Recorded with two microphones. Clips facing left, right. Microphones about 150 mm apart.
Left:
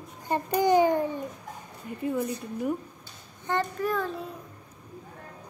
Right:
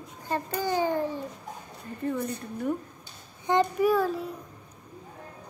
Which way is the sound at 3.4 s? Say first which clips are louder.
Right 5 dB; 15° right (ahead or behind).